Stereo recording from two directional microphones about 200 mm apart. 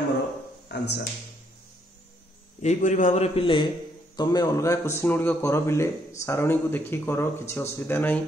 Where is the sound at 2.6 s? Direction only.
35° left (ahead or behind).